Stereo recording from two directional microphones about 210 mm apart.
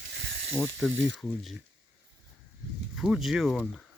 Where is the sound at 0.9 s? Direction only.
60° right (ahead or behind).